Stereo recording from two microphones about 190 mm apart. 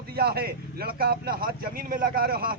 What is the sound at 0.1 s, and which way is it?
Speech, 55° right (ahead or behind).